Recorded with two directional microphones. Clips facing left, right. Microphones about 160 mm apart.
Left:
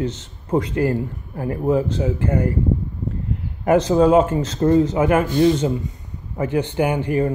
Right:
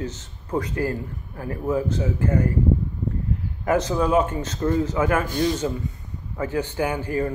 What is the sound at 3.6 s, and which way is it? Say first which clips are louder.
A man's voice: left 7 dB; 25° left (ahead or behind).